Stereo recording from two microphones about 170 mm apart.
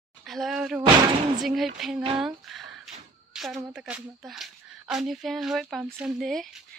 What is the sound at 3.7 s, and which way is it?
Speech, 5° right (ahead or behind).